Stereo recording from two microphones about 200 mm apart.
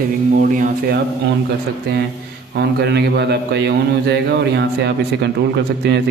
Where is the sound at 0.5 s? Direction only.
45° right (ahead or behind).